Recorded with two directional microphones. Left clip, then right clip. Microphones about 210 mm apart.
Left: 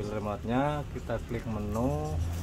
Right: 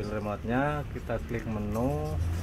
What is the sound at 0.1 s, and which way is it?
Speech, centre (ahead or behind).